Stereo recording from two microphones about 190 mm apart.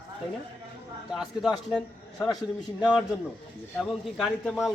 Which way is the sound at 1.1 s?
5° right (ahead or behind).